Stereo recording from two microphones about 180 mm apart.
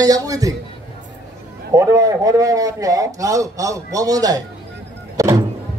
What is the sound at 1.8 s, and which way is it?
A man's voice, 20° right (ahead or behind).